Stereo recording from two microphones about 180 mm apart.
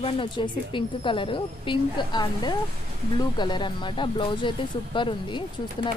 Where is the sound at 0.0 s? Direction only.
25° left (ahead or behind).